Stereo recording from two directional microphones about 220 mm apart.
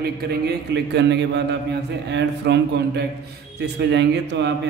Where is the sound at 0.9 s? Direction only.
50° right (ahead or behind).